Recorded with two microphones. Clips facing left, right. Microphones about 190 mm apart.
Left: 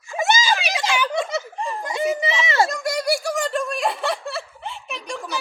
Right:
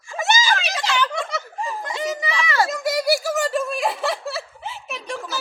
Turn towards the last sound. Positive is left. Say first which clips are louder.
# right 1 dB
turn(degrees=0)  # may be behind; listen again after turning